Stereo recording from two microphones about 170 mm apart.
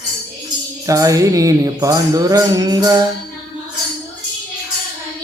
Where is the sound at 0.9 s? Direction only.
20° right (ahead or behind).